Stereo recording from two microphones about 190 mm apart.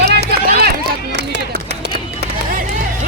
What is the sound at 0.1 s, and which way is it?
Run, 55° right (ahead or behind).